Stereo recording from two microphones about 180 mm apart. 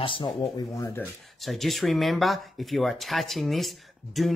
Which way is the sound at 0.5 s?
20° left (ahead or behind).